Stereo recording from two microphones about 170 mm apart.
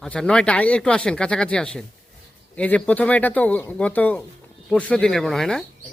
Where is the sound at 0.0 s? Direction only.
5° left (ahead or behind).